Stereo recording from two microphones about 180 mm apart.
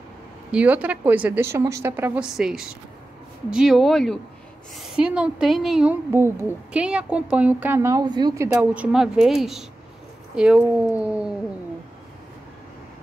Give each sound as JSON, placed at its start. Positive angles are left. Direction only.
{"t": 0.5, "sound": "a woman's voice", "side_deg": -5}